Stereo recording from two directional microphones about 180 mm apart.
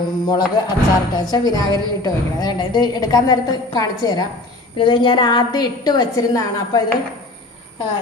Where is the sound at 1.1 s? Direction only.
20° left (ahead or behind).